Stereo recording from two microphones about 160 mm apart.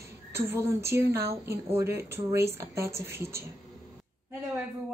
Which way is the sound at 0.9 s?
90° right.